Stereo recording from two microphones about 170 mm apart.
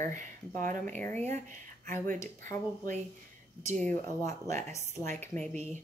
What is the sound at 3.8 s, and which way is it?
Speech, 15° left (ahead or behind).